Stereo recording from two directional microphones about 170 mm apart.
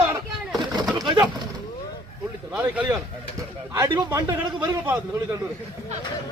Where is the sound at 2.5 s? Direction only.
10° right (ahead or behind).